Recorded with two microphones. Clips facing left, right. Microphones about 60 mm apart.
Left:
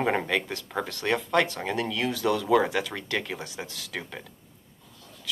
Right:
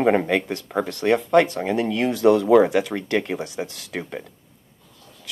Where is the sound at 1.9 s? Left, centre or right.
Right.